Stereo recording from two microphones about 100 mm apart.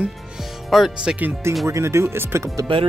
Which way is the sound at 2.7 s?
60° right (ahead or behind).